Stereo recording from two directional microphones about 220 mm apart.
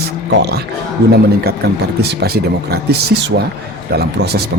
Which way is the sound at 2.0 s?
45° right (ahead or behind).